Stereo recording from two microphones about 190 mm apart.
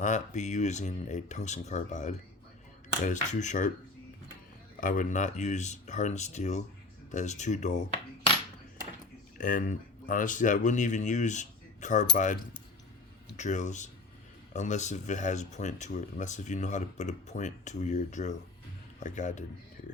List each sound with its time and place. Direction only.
0.0 s speech: 40° left (ahead or behind)
4.8 s speech: 45° left (ahead or behind)
9.4 s speech: 45° left (ahead or behind)